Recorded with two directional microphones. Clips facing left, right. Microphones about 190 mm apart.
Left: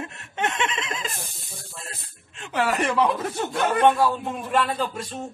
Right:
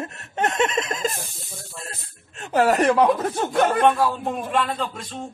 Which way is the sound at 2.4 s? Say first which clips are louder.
Right 6 dB; 40° right (ahead or behind).